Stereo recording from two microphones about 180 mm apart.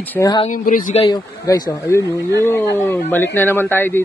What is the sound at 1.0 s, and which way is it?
Speech, 20° left (ahead or behind).